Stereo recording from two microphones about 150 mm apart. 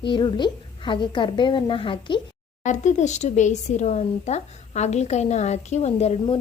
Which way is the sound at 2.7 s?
55° left (ahead or behind).